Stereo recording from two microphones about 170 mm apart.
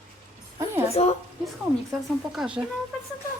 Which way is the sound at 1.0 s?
35° left (ahead or behind).